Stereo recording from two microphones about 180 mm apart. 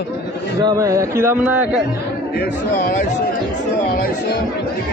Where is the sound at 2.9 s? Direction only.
40° left (ahead or behind).